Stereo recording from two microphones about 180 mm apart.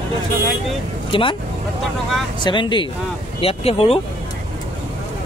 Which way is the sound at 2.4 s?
25° left (ahead or behind).